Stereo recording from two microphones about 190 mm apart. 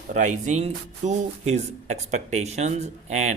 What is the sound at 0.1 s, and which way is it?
Speech, 40° right (ahead or behind).